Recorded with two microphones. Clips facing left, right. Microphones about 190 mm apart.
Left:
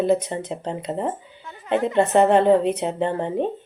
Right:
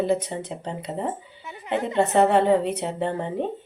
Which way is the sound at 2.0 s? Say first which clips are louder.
Left 2 dB; 60° left (ahead or behind).